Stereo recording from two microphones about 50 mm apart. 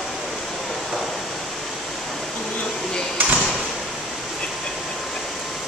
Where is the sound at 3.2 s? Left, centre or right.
Right.